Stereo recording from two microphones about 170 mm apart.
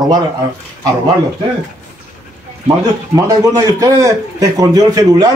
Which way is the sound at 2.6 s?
20° right (ahead or behind).